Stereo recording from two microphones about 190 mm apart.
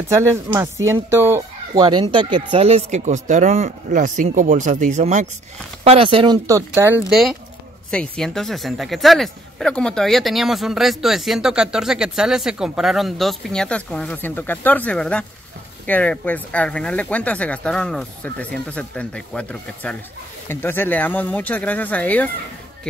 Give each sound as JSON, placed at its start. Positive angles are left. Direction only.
{"t": 0.1, "sound": "speech", "side_deg": -15}
{"t": 1.9, "sound": "speech", "side_deg": -25}
{"t": 7.1, "sound": "speech", "side_deg": 0}